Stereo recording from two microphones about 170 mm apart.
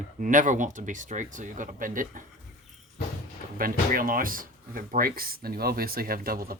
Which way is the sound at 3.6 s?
55° right (ahead or behind).